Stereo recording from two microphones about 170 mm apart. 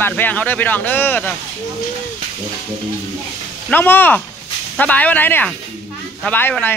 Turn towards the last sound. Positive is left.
turn(degrees=10)  # may be behind; listen again after turning